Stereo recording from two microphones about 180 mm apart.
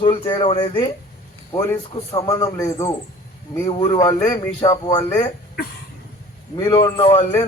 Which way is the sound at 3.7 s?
25° left (ahead or behind).